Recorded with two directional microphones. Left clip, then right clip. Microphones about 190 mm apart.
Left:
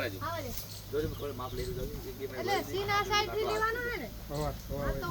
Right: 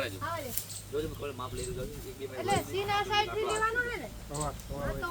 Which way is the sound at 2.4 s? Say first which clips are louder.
Right 2 dB; 5° left (ahead or behind).